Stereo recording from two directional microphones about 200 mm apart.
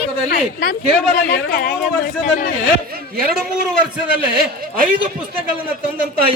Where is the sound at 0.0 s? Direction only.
45° left (ahead or behind).